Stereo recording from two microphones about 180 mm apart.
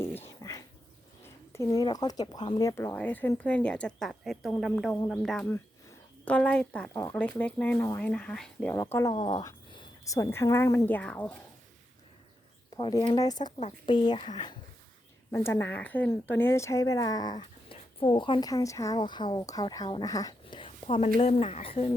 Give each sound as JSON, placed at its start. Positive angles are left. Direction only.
{"t": 0.4, "sound": "dog", "side_deg": 15}
{"t": 1.2, "sound": "speech", "side_deg": 15}
{"t": 8.7, "sound": "speech", "side_deg": 15}
{"t": 12.7, "sound": "speech", "side_deg": 20}
{"t": 15.3, "sound": "speech", "side_deg": 15}